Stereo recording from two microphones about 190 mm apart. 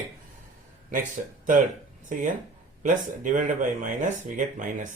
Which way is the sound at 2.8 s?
40° right (ahead or behind).